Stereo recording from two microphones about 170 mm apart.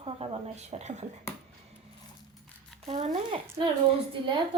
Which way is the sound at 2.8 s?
40° right (ahead or behind).